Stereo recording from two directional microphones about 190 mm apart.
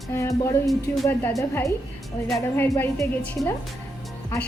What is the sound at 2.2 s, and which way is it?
A woman's voice, 5° left (ahead or behind).